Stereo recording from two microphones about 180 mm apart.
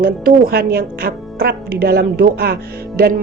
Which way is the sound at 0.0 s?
55° right (ahead or behind).